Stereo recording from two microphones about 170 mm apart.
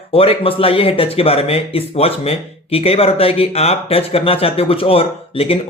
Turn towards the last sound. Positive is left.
turn(degrees=35)  # may be behind; listen again after turning